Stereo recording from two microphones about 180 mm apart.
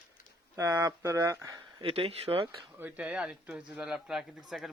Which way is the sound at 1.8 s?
30° right (ahead or behind).